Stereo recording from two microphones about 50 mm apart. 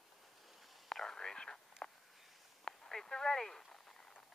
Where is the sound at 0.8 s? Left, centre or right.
Centre.